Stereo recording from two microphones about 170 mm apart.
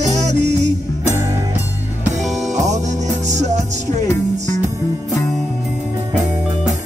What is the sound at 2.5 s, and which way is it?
Music, 45° right (ahead or behind).